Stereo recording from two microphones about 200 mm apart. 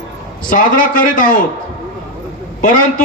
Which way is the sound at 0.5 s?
40° left (ahead or behind).